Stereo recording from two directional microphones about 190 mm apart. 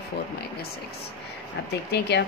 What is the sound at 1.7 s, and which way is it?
Speech, 60° left (ahead or behind).